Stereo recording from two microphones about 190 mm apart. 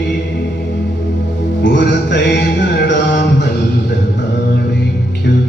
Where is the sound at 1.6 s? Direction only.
65° left (ahead or behind).